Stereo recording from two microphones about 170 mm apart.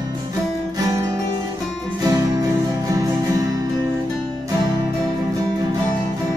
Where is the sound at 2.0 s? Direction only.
20° right (ahead or behind).